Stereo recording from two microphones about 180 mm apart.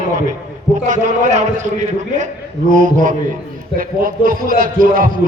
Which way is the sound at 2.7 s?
45° right (ahead or behind).